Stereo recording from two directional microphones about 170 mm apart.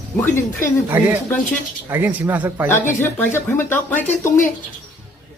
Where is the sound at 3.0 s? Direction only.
15° left (ahead or behind).